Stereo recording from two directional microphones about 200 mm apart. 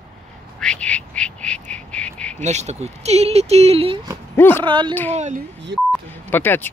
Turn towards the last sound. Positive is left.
turn(degrees=10)  # may be behind; listen again after turning